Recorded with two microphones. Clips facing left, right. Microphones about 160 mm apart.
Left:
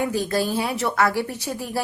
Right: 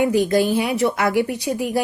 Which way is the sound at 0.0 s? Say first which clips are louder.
Right 6 dB; 15° right (ahead or behind).